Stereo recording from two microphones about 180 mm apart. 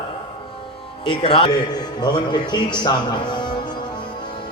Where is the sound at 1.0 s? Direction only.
30° left (ahead or behind).